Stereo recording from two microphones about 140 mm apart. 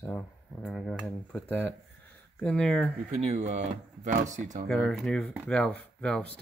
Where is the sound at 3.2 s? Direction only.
50° right (ahead or behind).